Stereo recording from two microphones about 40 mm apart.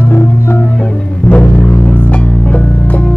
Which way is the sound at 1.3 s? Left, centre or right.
Left.